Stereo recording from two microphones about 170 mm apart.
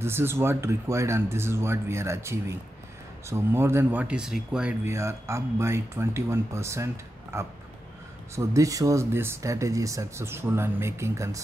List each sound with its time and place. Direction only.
0.0 s speech: 15° right (ahead or behind)